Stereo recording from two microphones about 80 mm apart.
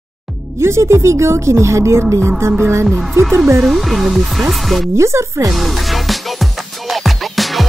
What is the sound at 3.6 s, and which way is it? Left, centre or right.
Speech, centre.